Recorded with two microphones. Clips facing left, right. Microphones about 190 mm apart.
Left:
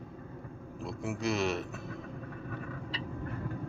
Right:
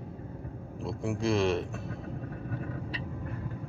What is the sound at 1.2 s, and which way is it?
Speech, 30° right (ahead or behind).